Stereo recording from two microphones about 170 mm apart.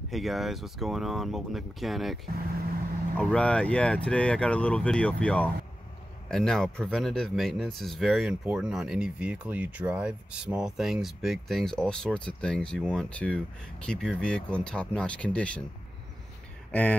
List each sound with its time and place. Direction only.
0.1 s speech: centre (ahead or behind)
3.2 s speech: 5° left (ahead or behind)